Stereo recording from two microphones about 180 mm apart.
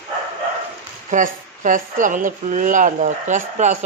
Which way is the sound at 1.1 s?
45° right (ahead or behind).